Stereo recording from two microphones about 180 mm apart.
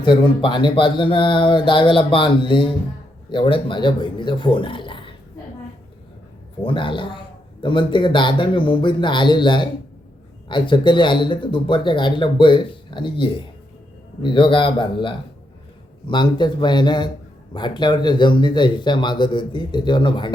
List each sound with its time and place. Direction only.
0.0 s speech: 25° left (ahead or behind)
6.6 s speech: 30° left (ahead or behind)